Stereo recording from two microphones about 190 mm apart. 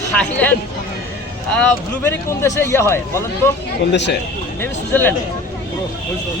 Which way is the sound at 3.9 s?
65° left (ahead or behind).